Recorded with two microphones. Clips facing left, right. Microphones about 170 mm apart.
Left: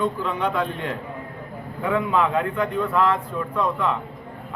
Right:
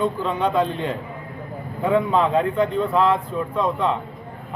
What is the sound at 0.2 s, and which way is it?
Speech, 25° right (ahead or behind).